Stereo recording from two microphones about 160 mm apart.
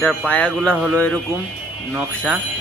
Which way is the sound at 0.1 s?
5° left (ahead or behind).